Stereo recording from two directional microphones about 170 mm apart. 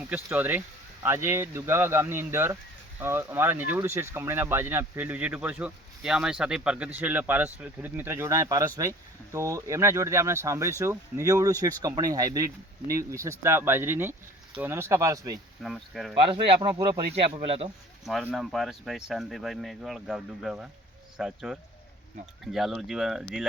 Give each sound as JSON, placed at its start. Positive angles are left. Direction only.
{"t": 0.1, "sound": "speech", "side_deg": -10}
{"t": 15.6, "sound": "speech", "side_deg": 0}
{"t": 16.3, "sound": "speech", "side_deg": -25}
{"t": 17.2, "sound": "speech", "side_deg": -35}
{"t": 18.0, "sound": "speech", "side_deg": 0}